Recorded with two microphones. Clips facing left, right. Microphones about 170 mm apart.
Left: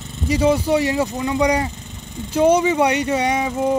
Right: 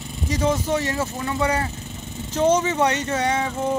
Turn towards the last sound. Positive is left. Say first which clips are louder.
# left 3 dB
turn(degrees=15)  # may be behind; listen again after turning